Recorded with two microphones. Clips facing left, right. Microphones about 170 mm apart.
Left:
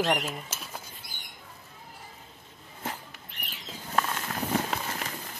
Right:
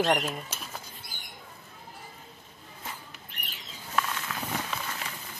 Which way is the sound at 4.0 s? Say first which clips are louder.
Left 2 dB; 45° left (ahead or behind).